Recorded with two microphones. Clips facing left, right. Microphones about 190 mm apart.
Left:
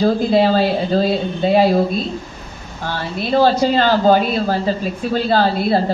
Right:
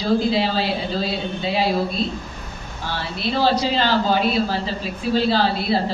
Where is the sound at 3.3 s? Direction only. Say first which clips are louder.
Left 5 dB; 50° left (ahead or behind).